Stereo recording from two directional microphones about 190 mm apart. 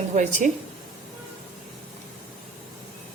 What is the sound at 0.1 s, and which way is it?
Speech, 40° right (ahead or behind).